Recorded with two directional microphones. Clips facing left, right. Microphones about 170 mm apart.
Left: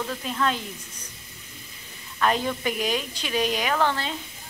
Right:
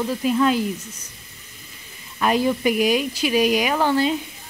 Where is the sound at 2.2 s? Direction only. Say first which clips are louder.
Right 5 dB; 10° right (ahead or behind).